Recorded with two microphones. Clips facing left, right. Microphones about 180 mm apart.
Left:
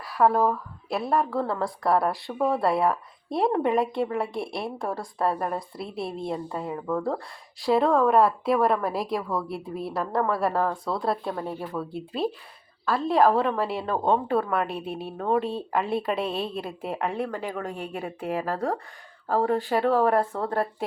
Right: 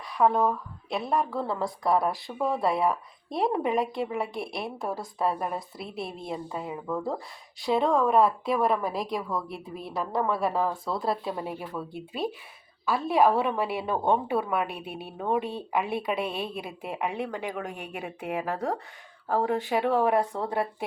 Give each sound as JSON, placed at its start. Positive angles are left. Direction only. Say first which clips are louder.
{"t": 0.0, "sound": "a woman's voice", "louder": "left 2 dB", "side_deg": 5}